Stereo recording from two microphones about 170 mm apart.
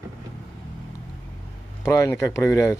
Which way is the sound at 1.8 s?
20° left (ahead or behind).